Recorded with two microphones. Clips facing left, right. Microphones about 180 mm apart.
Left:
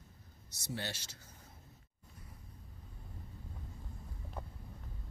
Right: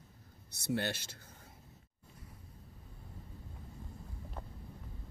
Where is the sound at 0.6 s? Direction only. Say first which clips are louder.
Right 7 dB; 60° right (ahead or behind).